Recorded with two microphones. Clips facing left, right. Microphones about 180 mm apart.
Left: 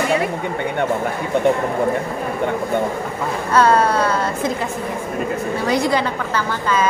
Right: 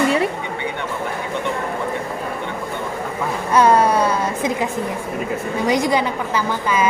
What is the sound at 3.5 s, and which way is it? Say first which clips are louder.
A woman's voice: right 1 dB; 15° right (ahead or behind).